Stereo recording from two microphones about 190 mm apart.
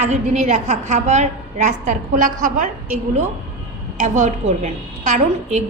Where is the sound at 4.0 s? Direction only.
40° right (ahead or behind).